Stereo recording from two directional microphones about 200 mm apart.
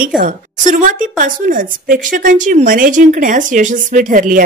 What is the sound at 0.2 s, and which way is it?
A woman's voice, 40° right (ahead or behind).